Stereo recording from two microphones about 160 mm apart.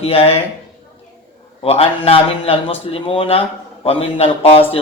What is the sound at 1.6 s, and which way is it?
Speech, 40° left (ahead or behind).